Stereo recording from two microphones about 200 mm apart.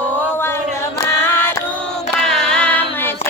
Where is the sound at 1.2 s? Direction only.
10° left (ahead or behind).